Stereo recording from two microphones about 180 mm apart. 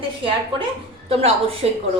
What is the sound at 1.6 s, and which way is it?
Speech, 35° right (ahead or behind).